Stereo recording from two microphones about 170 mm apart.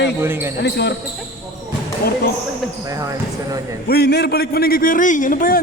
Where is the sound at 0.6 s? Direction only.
85° left.